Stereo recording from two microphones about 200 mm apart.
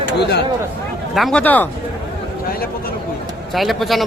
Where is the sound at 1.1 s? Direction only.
5° left (ahead or behind).